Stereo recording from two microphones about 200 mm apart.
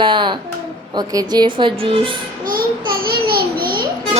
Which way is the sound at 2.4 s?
45° right (ahead or behind).